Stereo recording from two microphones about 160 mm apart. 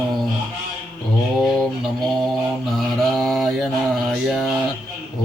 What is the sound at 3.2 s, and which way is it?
Mantra, centre (ahead or behind).